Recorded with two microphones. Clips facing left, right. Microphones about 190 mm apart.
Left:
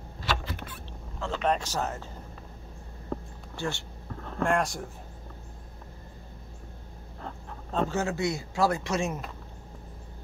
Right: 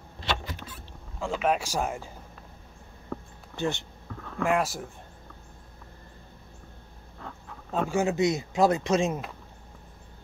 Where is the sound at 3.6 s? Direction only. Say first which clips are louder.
Right 4 dB; 20° right (ahead or behind).